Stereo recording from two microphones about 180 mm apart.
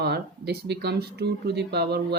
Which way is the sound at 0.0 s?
65° right (ahead or behind).